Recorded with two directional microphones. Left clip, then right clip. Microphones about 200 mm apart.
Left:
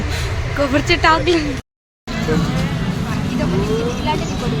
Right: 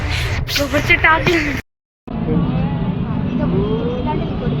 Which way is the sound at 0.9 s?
30° left (ahead or behind).